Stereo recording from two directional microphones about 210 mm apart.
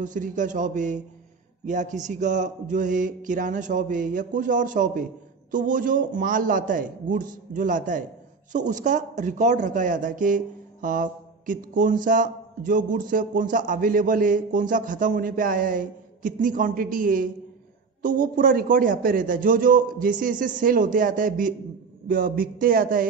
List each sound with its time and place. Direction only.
0.0 s speech: 40° right (ahead or behind)